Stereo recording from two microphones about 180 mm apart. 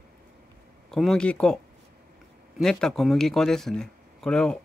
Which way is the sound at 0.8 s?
Centre (ahead or behind).